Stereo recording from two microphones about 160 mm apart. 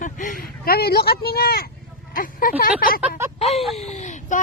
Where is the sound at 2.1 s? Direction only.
60° left (ahead or behind).